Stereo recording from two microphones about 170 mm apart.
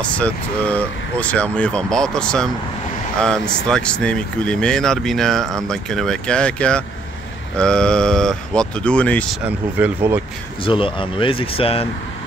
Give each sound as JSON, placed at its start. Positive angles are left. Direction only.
{"t": 0.0, "sound": "speech", "side_deg": 5}
{"t": 9.4, "sound": "speech", "side_deg": -10}
{"t": 10.6, "sound": "speech", "side_deg": 30}